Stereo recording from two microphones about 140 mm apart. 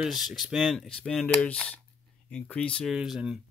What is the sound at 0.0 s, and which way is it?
Speech, 5° right (ahead or behind).